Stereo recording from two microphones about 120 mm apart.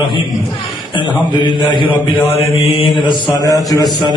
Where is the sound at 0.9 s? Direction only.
40° left (ahead or behind).